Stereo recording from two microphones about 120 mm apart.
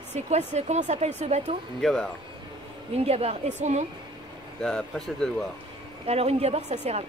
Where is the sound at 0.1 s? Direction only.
70° right (ahead or behind).